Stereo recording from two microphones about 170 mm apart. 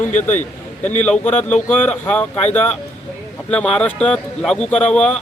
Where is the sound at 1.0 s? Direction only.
5° left (ahead or behind).